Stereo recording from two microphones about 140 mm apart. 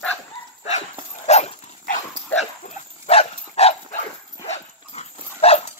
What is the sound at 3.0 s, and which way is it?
Dog, 45° left (ahead or behind).